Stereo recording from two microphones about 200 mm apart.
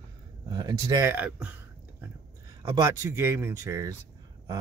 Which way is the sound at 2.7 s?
15° right (ahead or behind).